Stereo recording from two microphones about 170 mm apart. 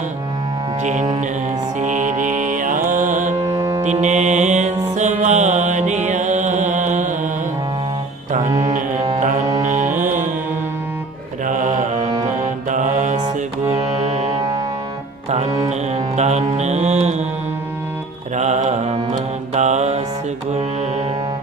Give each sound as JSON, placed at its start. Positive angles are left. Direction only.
{"t": 0.8, "sound": "music", "side_deg": -45}
{"t": 3.4, "sound": "music", "side_deg": -20}
{"t": 4.0, "sound": "music", "side_deg": -45}
{"t": 8.3, "sound": "music", "side_deg": -45}
{"t": 11.4, "sound": "mantra", "side_deg": -50}
{"t": 13.7, "sound": "music", "side_deg": -40}
{"t": 18.3, "sound": "mantra", "side_deg": -40}